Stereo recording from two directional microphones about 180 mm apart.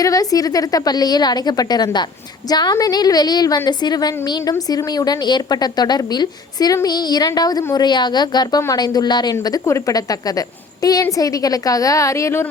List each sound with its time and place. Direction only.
0.0 s a woman's voice: 20° left (ahead or behind)